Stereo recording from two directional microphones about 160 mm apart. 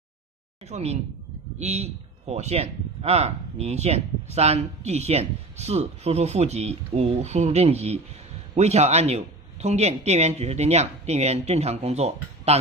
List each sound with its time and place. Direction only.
0.7 s a man's voice: 45° right (ahead or behind)